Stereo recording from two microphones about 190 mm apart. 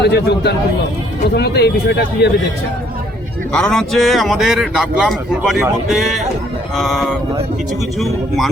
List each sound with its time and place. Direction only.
0.0 s speech: 60° left (ahead or behind)
3.5 s a man's voice: 5° left (ahead or behind)